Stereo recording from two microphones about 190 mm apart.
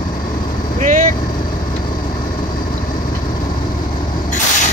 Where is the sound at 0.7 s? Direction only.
40° right (ahead or behind).